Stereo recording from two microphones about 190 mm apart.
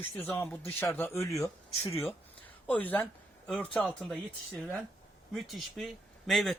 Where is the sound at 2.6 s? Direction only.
10° left (ahead or behind).